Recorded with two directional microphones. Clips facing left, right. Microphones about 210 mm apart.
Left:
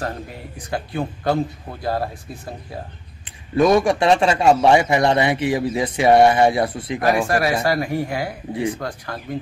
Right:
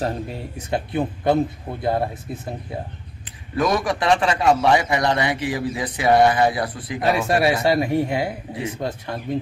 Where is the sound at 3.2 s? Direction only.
25° left (ahead or behind).